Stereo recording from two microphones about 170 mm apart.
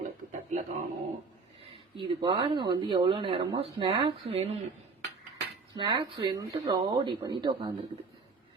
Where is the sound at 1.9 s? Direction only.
30° right (ahead or behind).